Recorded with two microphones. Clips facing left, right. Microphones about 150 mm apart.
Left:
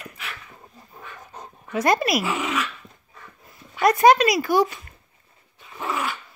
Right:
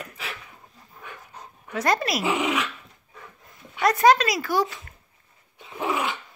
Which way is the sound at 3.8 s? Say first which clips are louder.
Left 3 dB; 15° left (ahead or behind).